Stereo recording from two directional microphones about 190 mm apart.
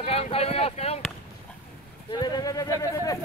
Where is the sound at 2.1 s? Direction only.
20° left (ahead or behind).